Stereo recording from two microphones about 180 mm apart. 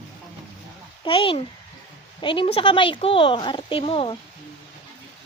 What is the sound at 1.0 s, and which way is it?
Speech, 30° left (ahead or behind).